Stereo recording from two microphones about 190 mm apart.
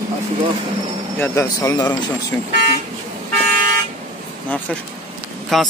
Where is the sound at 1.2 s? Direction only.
15° left (ahead or behind).